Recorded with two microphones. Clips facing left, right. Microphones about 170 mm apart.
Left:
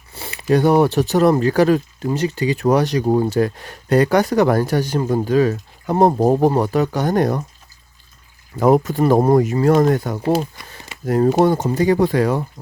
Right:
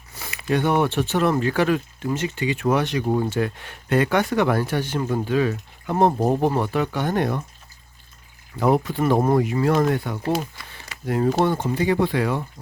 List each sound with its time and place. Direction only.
0.1 s speech: 30° left (ahead or behind)
8.5 s speech: 45° left (ahead or behind)
10.6 s speech: 20° left (ahead or behind)
11.0 s speech: 40° left (ahead or behind)